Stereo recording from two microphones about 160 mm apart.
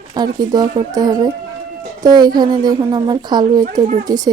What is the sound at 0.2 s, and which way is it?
A woman's voice, 25° right (ahead or behind).